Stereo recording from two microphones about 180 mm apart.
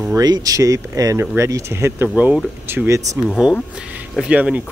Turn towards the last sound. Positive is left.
turn(degrees=-5)  # may be behind; listen again after turning